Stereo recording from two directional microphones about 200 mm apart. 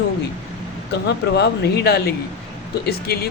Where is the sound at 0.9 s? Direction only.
55° left (ahead or behind).